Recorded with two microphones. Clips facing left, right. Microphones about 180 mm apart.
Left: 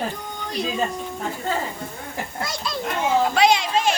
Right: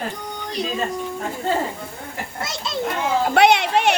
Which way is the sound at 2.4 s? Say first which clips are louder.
Right 1 dB; 25° right (ahead or behind).